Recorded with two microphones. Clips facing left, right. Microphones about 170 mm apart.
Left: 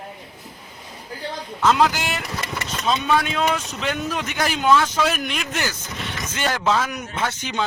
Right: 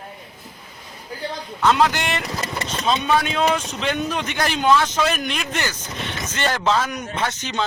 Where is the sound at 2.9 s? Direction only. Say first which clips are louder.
Right 1 dB; centre (ahead or behind).